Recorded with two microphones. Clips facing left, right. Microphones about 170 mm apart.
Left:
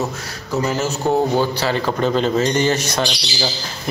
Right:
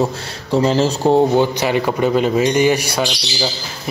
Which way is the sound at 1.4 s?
15° right (ahead or behind).